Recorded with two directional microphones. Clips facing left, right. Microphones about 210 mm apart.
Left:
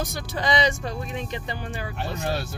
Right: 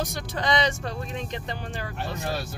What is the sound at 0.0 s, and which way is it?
Speech, 5° left (ahead or behind).